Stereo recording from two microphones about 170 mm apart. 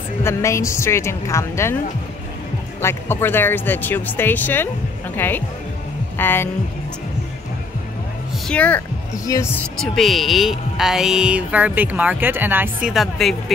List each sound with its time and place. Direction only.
0.2 s speech: 15° left (ahead or behind)
2.8 s speech: 15° left (ahead or behind)
8.5 s speech: 10° left (ahead or behind)
9.1 s speech: 20° left (ahead or behind)
9.6 s speech: centre (ahead or behind)